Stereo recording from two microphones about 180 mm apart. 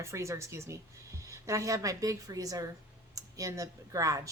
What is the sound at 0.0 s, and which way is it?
Speech, 15° right (ahead or behind).